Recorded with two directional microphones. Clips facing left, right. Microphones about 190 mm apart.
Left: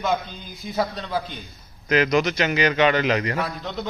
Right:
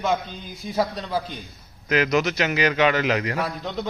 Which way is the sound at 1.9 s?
5° right (ahead or behind).